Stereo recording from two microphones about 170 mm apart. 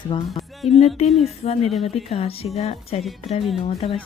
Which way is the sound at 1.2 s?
40° left (ahead or behind).